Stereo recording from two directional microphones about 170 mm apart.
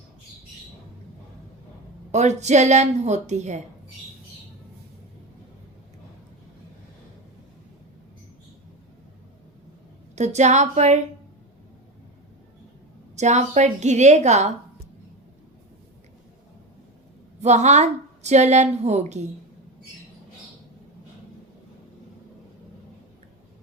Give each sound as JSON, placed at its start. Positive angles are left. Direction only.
{"t": 2.1, "sound": "a woman's voice", "side_deg": -45}
{"t": 10.2, "sound": "a woman's voice", "side_deg": -45}
{"t": 13.1, "sound": "a woman's voice", "side_deg": -45}
{"t": 17.4, "sound": "a woman's voice", "side_deg": -40}